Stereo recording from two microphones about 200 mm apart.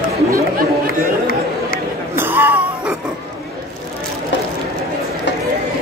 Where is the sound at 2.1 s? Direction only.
10° right (ahead or behind).